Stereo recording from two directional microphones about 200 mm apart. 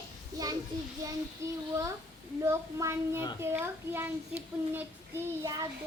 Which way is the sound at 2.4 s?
15° right (ahead or behind).